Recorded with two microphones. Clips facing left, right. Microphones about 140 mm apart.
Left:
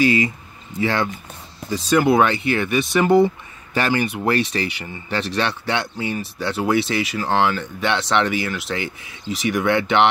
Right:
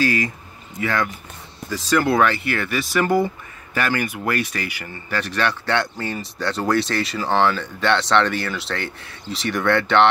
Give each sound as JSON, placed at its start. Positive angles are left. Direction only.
{"t": 0.0, "sound": "speech", "side_deg": 20}